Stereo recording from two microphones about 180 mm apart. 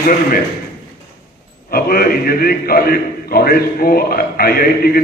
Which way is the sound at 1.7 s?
55° left (ahead or behind).